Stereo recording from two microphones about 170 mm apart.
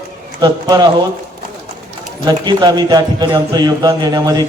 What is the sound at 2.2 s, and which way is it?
A man's voice, 25° right (ahead or behind).